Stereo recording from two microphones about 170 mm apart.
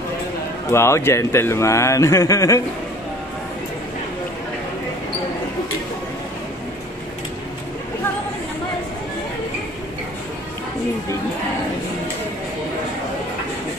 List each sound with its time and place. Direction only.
0.7 s a man's voice: 15° left (ahead or behind)